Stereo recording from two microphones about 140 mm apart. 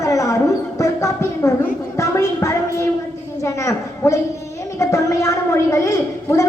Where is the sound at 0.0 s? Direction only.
25° left (ahead or behind).